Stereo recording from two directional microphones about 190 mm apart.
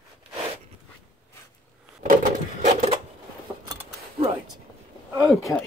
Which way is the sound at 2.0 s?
40° right (ahead or behind).